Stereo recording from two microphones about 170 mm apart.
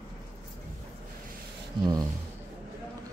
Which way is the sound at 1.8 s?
25° right (ahead or behind).